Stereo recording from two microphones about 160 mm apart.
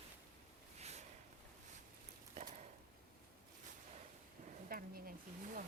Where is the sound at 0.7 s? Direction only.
45° right (ahead or behind).